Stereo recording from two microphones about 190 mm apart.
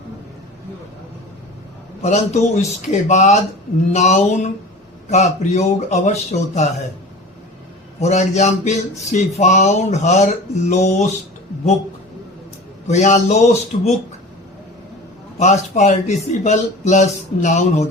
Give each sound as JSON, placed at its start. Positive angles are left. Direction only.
{"t": 2.0, "sound": "a man's voice", "side_deg": 35}
{"t": 7.9, "sound": "a man's voice", "side_deg": 35}
{"t": 12.9, "sound": "a man's voice", "side_deg": 40}
{"t": 15.4, "sound": "a man's voice", "side_deg": 40}